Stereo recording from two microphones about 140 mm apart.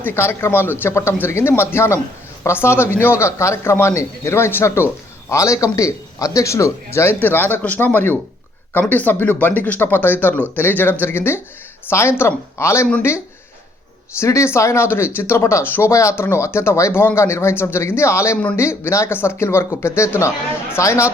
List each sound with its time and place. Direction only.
0.0 s speech: 15° left (ahead or behind)
14.2 s speech: 20° left (ahead or behind)